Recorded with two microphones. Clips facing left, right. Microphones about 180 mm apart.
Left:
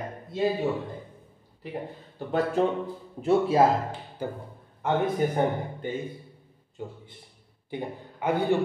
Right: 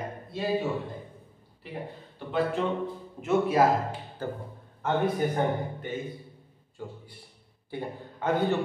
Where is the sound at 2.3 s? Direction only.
40° left (ahead or behind).